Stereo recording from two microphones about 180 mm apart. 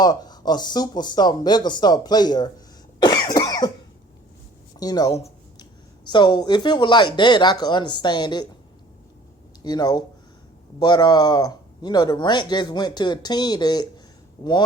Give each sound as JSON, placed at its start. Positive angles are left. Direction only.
{"t": 0.0, "sound": "a man's voice", "side_deg": 20}
{"t": 3.0, "sound": "cough", "side_deg": 20}
{"t": 4.8, "sound": "a man's voice", "side_deg": 20}
{"t": 9.6, "sound": "a man's voice", "side_deg": 25}